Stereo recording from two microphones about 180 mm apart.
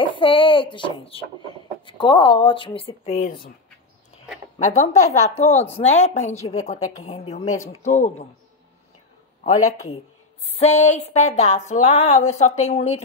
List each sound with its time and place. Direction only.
0.0 s speech: 30° left (ahead or behind)
4.6 s speech: 40° left (ahead or behind)
10.5 s speech: 35° left (ahead or behind)